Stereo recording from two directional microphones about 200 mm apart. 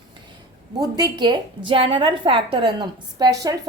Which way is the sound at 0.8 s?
20° right (ahead or behind).